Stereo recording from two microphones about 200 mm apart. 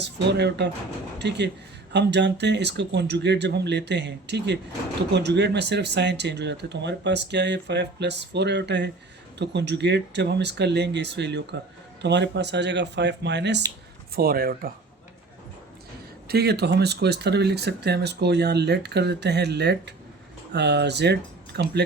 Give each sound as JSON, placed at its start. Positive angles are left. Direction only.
{"t": 0.0, "sound": "speech", "side_deg": -60}
{"t": 14.2, "sound": "speech", "side_deg": -50}
{"t": 16.3, "sound": "speech", "side_deg": -55}